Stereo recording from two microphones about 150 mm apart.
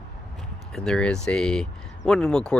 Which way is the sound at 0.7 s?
5° left (ahead or behind).